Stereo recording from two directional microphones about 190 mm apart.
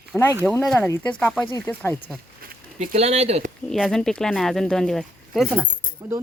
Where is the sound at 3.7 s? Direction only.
Centre (ahead or behind).